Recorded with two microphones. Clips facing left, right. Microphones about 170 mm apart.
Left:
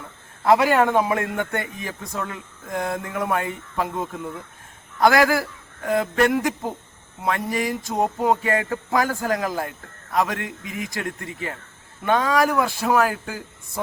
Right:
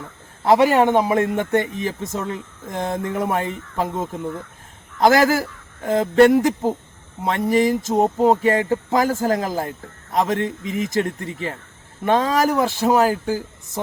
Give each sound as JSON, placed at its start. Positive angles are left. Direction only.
{"t": 0.4, "sound": "a man's voice", "side_deg": -25}